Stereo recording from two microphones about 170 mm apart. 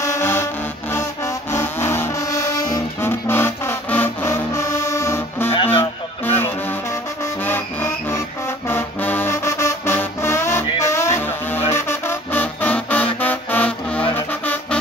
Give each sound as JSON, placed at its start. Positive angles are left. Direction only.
{"t": 0.0, "sound": "music", "side_deg": 15}
{"t": 5.5, "sound": "music", "side_deg": 35}
{"t": 5.8, "sound": "music", "side_deg": 15}
{"t": 14.1, "sound": "brass instrument", "side_deg": 10}